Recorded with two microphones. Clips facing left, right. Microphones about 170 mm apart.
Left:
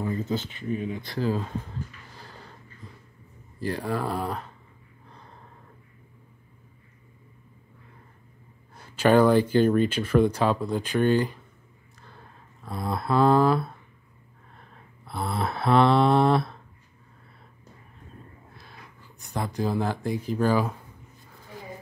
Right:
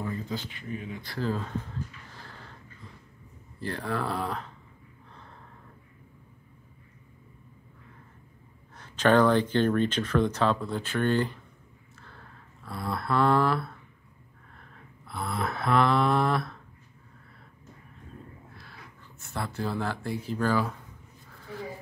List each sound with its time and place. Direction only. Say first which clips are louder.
0.3 s speech: left 6 dB; 25° left (ahead or behind)
2.1 s a sound: left 2 dB; 15° left (ahead or behind)
3.5 s speech: left 3 dB; 10° left (ahead or behind)
8.7 s speech: left 2 dB; 10° left (ahead or behind)
12.0 s a sound: left 2 dB; 15° left (ahead or behind)
15.0 s speech: left 3 dB; 30° left (ahead or behind)
18.6 s speech: left 1 dB; 15° left (ahead or behind)